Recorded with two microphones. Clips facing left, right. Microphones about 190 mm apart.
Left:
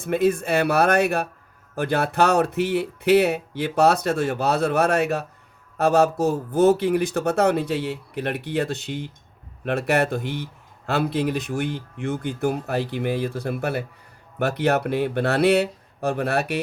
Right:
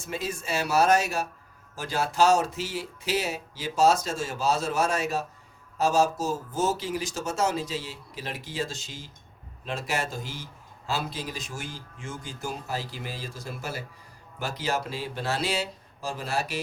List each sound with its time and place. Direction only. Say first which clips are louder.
0.0 s speech: left 13 dB; 60° left (ahead or behind)